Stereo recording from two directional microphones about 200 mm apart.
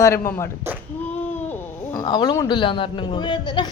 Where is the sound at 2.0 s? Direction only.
20° left (ahead or behind).